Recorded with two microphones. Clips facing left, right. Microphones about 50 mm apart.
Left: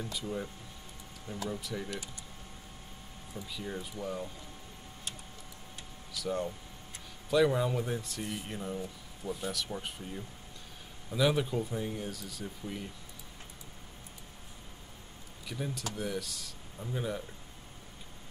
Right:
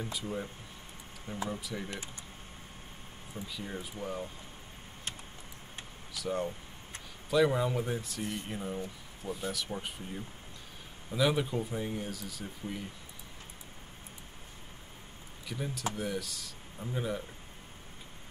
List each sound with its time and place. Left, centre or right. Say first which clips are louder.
0.1 s speech: even; centre
1.3 s speech: right 2 dB; right
1.6 s speech: left 1 dB; centre
3.4 s speech: left 1 dB; centre
6.1 s speech: even; centre
15.4 s speech: right 2 dB; centre